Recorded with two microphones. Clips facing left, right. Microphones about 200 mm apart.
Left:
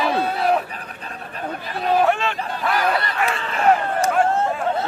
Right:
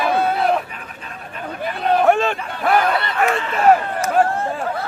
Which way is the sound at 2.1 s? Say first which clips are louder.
Right 4 dB; 50° right (ahead or behind).